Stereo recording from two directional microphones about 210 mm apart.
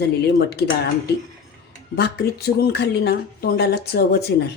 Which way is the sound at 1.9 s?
50° left (ahead or behind).